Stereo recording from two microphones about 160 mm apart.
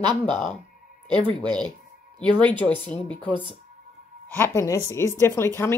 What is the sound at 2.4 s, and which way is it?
A woman's voice, 10° left (ahead or behind).